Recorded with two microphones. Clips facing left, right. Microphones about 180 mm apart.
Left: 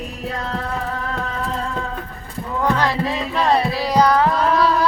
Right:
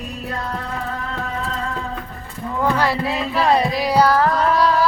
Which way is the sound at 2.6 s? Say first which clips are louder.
Even; 10° right (ahead or behind).